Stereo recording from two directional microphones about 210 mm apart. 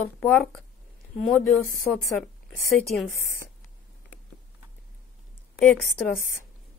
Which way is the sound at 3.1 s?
90° left.